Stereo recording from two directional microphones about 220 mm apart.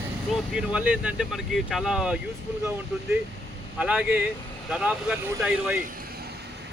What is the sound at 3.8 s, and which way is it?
Speech, 5° right (ahead or behind).